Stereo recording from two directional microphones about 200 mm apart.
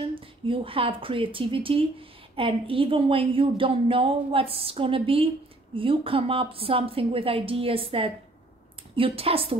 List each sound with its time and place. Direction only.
0.1 s speech: 25° right (ahead or behind)